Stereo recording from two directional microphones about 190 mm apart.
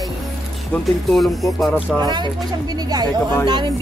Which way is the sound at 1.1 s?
Centre (ahead or behind).